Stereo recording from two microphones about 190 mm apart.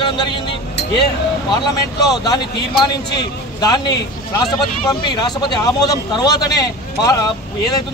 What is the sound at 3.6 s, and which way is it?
Speech, 20° left (ahead or behind).